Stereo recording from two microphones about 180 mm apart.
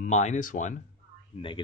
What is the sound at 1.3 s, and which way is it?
Speech, 30° left (ahead or behind).